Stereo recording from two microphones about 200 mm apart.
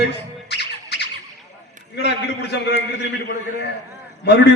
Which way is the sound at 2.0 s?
60° left (ahead or behind).